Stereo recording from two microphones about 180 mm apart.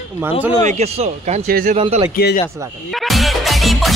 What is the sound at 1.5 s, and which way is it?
Speech, 50° right (ahead or behind).